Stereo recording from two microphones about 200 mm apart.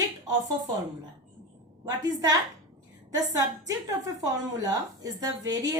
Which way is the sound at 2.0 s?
20° right (ahead or behind).